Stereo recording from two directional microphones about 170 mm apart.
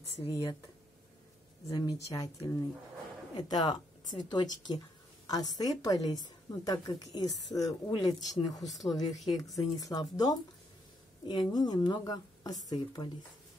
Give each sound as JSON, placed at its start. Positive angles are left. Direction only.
{"t": 0.3, "sound": "a woman's voice", "side_deg": 20}
{"t": 1.7, "sound": "a woman's voice", "side_deg": 20}